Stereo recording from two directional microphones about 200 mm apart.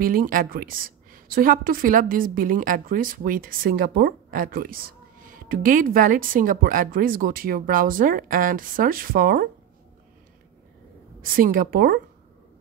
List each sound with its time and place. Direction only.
0.0 s a woman's voice: 45° right (ahead or behind)
11.1 s a woman's voice: 45° right (ahead or behind)